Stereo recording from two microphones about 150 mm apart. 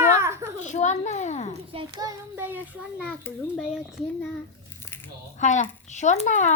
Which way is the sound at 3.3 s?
15° left (ahead or behind).